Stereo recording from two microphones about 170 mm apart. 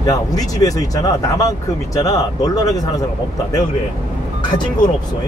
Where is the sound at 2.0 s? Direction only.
20° left (ahead or behind).